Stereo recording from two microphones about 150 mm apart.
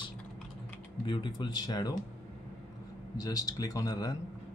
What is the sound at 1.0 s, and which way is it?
Speech, 30° left (ahead or behind).